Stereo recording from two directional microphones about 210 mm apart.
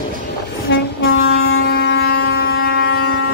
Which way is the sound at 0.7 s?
70° left (ahead or behind).